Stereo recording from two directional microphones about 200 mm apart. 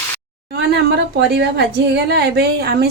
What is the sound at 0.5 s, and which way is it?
A woman's voice, 55° right (ahead or behind).